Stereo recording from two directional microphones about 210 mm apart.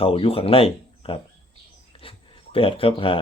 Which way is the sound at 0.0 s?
25° left (ahead or behind).